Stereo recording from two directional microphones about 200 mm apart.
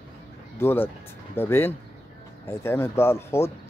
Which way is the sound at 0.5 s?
10° left (ahead or behind).